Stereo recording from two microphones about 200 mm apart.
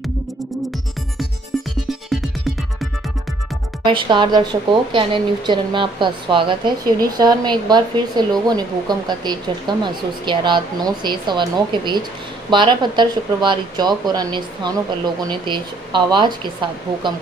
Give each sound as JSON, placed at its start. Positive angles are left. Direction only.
{"t": 3.8, "sound": "speech", "side_deg": -25}